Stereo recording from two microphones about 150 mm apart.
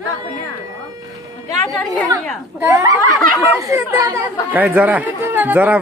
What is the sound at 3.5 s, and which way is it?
Speech, 20° right (ahead or behind).